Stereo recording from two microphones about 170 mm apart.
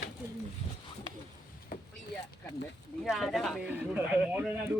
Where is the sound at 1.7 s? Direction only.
60° left (ahead or behind).